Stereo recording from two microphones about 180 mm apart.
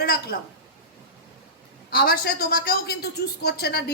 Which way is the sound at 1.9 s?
60° left (ahead or behind).